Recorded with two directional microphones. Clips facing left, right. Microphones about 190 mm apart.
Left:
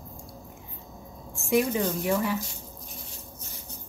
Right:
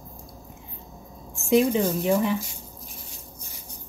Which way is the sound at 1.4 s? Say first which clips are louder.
Right 4 dB; 20° right (ahead or behind).